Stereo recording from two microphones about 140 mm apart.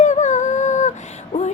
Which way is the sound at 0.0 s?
60° left (ahead or behind).